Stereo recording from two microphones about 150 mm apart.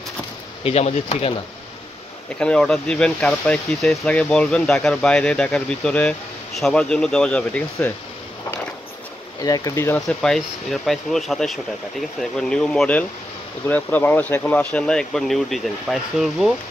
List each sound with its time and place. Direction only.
0.7 s speech: 45° left (ahead or behind)
2.3 s speech: 5° left (ahead or behind)
9.4 s speech: 25° left (ahead or behind)
9.9 s speech: 5° left (ahead or behind)